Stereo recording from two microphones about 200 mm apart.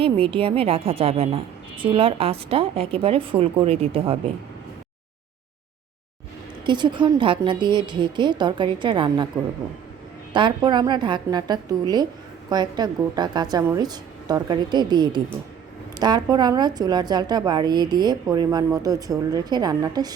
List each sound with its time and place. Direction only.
0.0 s a woman's voice: 25° right (ahead or behind)
6.7 s a woman's voice: 25° right (ahead or behind)
10.3 s a woman's voice: 25° right (ahead or behind)